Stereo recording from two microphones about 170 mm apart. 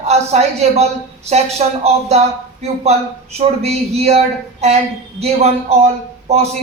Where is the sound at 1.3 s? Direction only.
40° right (ahead or behind).